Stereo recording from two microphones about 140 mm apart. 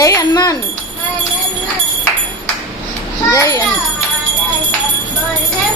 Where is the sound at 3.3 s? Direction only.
25° left (ahead or behind).